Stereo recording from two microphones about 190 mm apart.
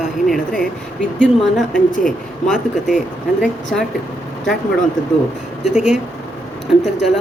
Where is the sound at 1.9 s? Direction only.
45° left (ahead or behind).